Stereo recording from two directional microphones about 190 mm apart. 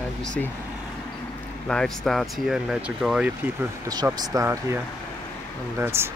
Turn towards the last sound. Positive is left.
turn(degrees=-15)  # may be behind; listen again after turning